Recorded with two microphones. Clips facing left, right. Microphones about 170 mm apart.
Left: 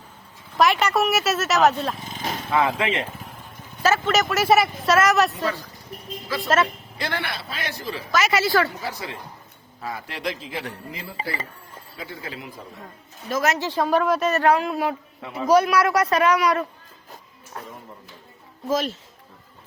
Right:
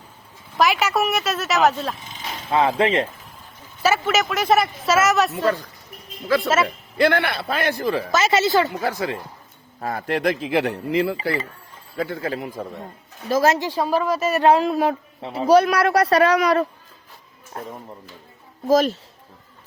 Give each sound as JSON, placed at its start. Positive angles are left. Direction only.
{"t": 0.5, "sound": "speech", "side_deg": 0}
{"t": 2.5, "sound": "a man's voice", "side_deg": -25}
{"t": 3.8, "sound": "speech", "side_deg": -10}
{"t": 6.2, "sound": "a woman's voice", "side_deg": -60}
{"t": 8.1, "sound": "a woman's voice", "side_deg": -25}
{"t": 8.8, "sound": "a man's voice", "side_deg": -50}
{"t": 11.9, "sound": "a man's voice", "side_deg": -55}
{"t": 13.2, "sound": "a man's voice", "side_deg": -30}
{"t": 13.6, "sound": "a woman's voice", "side_deg": -10}
{"t": 14.3, "sound": "a man's voice", "side_deg": -25}
{"t": 17.5, "sound": "a man's voice", "side_deg": -35}